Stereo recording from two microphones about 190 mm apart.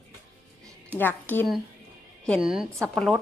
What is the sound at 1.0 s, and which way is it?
Speech, 10° left (ahead or behind).